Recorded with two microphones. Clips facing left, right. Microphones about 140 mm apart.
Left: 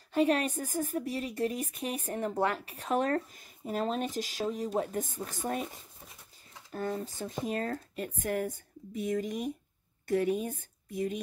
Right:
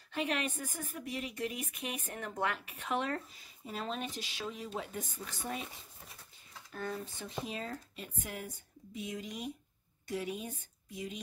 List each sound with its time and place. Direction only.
0.1 s speech: 40° left (ahead or behind)
6.7 s speech: 35° left (ahead or behind)